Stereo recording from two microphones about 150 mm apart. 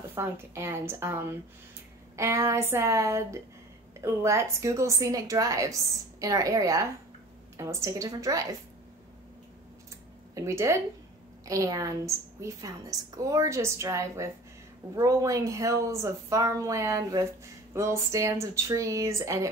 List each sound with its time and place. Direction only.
0.1 s a woman's voice: 15° right (ahead or behind)
10.3 s a woman's voice: 20° right (ahead or behind)